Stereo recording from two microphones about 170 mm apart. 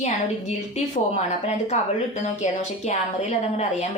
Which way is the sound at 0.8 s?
40° left (ahead or behind).